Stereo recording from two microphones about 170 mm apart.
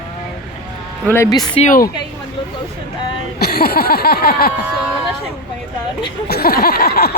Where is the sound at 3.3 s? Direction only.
65° left (ahead or behind).